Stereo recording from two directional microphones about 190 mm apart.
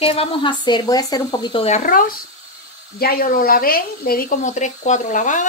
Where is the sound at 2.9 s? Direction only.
50° left (ahead or behind).